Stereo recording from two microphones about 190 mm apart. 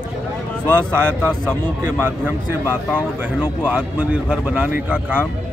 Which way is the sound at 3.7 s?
5° right (ahead or behind).